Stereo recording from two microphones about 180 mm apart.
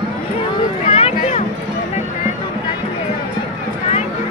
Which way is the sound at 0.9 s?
35° left (ahead or behind).